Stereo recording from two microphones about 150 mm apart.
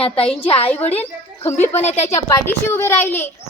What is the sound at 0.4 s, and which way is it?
A woman's voice, 40° left (ahead or behind).